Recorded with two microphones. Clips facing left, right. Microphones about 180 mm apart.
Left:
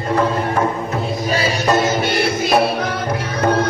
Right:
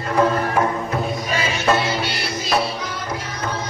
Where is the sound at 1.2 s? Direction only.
35° left (ahead or behind).